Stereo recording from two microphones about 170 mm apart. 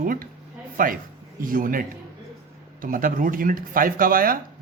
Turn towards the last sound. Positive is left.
turn(degrees=-55)  # may be behind; listen again after turning